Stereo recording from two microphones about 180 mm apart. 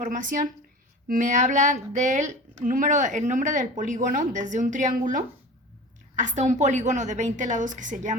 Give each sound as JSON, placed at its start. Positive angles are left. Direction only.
{"t": 0.0, "sound": "speech", "side_deg": -45}